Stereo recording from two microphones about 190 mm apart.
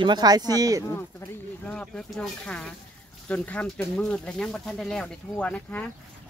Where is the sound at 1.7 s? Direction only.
5° left (ahead or behind).